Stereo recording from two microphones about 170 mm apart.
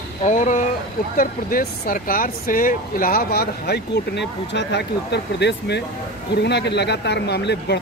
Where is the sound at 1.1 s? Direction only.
55° left (ahead or behind).